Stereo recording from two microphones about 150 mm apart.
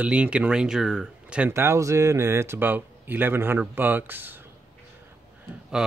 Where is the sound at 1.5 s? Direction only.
20° right (ahead or behind).